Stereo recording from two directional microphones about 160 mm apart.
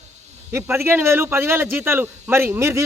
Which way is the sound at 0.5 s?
15° right (ahead or behind).